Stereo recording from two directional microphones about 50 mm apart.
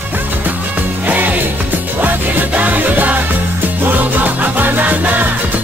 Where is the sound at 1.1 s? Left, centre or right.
Right.